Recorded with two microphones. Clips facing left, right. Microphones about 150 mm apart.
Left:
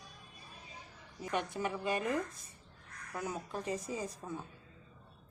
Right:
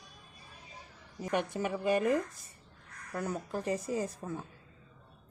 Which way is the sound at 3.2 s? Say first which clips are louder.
Right 4 dB; 70° right (ahead or behind).